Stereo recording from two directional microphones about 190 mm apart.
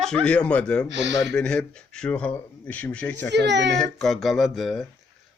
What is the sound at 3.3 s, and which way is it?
Speech, 65° right (ahead or behind).